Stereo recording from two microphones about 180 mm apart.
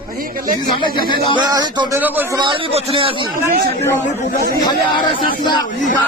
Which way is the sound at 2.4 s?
30° right (ahead or behind).